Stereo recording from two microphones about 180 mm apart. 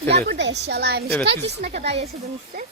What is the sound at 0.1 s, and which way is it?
A child's voice, 70° right (ahead or behind).